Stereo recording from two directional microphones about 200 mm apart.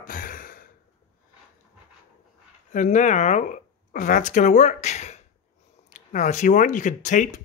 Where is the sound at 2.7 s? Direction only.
40° left (ahead or behind).